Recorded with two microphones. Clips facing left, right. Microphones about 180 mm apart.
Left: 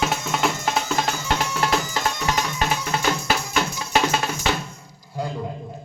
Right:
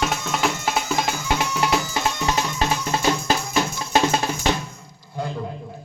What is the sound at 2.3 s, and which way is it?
Music, 30° right (ahead or behind).